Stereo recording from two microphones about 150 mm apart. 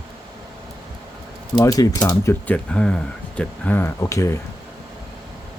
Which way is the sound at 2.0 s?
10° left (ahead or behind).